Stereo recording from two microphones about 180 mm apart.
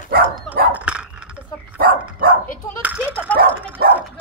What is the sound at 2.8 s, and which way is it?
Speech, 10° right (ahead or behind).